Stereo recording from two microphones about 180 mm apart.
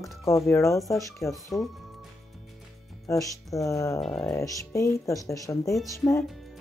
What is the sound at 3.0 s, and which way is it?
Speech, 20° left (ahead or behind).